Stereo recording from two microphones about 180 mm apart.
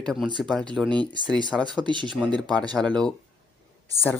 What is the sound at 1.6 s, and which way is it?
Speech, 25° right (ahead or behind).